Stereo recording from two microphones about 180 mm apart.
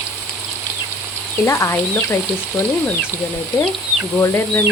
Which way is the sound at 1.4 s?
15° left (ahead or behind).